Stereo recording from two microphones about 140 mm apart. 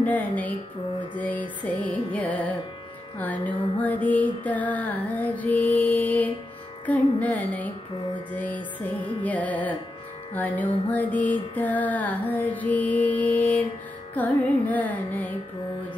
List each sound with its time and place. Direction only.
0.0 s music: 10° left (ahead or behind)